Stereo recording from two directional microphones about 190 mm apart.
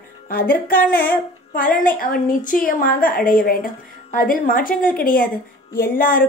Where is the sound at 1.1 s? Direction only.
45° left (ahead or behind).